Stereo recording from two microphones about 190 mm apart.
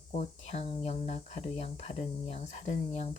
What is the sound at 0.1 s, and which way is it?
Speech, 35° left (ahead or behind).